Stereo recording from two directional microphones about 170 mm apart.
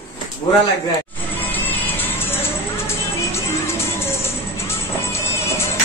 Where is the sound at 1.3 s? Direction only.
10° left (ahead or behind).